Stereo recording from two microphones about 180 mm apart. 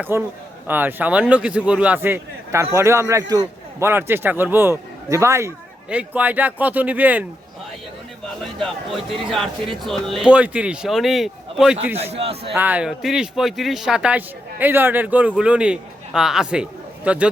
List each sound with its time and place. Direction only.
0.0 s a man's voice: 10° right (ahead or behind)
8.5 s speech: centre (ahead or behind)
12.1 s a man's voice: 35° right (ahead or behind)
12.5 s a man's voice: 10° right (ahead or behind)